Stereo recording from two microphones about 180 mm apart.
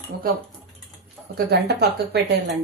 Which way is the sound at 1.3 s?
65° right (ahead or behind).